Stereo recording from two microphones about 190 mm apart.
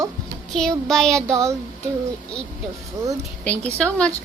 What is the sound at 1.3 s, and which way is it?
Speech, 15° right (ahead or behind).